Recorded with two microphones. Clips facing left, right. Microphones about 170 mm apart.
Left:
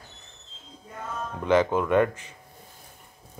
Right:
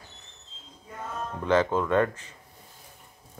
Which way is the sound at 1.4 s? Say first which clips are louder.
Left 2 dB; 15° left (ahead or behind).